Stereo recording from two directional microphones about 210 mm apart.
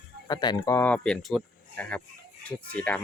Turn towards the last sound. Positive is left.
turn(degrees=5)  # may be behind; listen again after turning